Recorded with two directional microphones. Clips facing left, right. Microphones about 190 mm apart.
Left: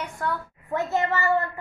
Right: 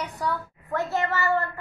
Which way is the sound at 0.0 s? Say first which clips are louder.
Even; centre (ahead or behind).